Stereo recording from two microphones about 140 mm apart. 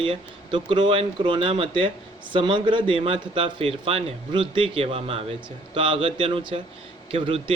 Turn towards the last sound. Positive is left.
turn(degrees=-40)  # may be behind; listen again after turning